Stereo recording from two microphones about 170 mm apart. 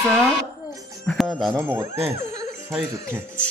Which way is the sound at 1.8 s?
15° right (ahead or behind).